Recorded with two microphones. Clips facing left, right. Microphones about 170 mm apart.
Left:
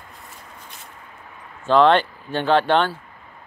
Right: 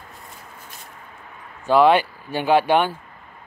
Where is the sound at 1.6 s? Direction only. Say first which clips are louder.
Even; 10° right (ahead or behind).